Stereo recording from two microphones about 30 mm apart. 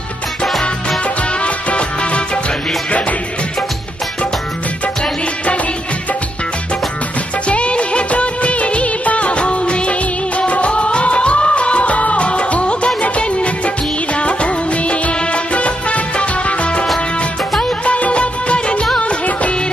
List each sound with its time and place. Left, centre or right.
1.4 s music: left
7.4 s music of bollywood: left
14.1 s music: left
17.8 s music of bollywood: left
18.1 s music of bollywood: left